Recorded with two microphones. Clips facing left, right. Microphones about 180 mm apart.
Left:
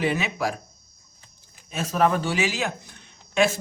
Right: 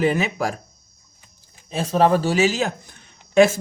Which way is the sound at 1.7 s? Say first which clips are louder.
Right 5 dB; 30° right (ahead or behind).